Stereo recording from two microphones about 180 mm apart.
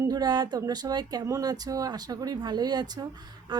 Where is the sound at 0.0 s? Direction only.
20° right (ahead or behind).